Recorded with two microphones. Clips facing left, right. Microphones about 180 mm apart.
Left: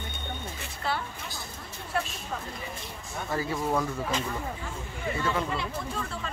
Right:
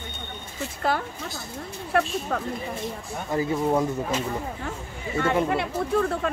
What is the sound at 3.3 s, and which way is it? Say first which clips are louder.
Speech: right 6 dB; 20° right (ahead or behind).